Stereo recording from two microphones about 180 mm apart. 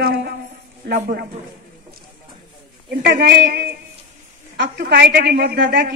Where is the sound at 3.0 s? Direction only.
60° right (ahead or behind).